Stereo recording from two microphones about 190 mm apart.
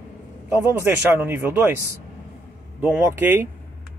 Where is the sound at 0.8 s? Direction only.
10° right (ahead or behind).